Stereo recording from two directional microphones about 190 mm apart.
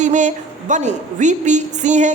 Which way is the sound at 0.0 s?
40° right (ahead or behind).